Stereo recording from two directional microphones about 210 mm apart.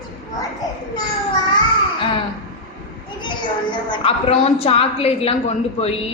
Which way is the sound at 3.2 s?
20° left (ahead or behind).